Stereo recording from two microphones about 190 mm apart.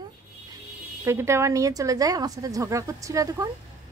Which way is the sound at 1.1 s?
15° right (ahead or behind).